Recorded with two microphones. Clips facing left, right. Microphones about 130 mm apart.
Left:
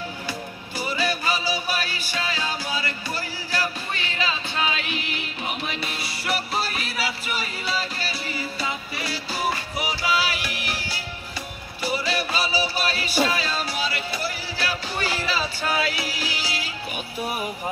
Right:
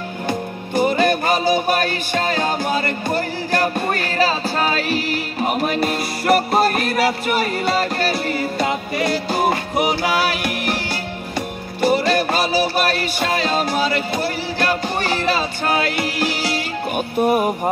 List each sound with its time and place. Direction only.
0.3 s music: 50° right (ahead or behind)
11.8 s music: 55° right (ahead or behind)